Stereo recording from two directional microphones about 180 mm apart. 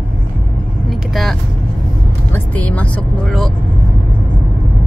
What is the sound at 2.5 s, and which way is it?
Speech, 10° left (ahead or behind).